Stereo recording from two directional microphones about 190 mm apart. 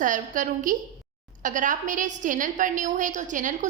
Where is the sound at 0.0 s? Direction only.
45° right (ahead or behind).